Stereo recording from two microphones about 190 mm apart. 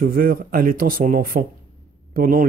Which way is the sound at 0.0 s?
50° right (ahead or behind).